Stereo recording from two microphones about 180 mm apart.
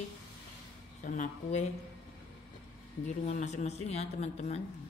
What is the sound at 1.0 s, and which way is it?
Speech, 45° left (ahead or behind).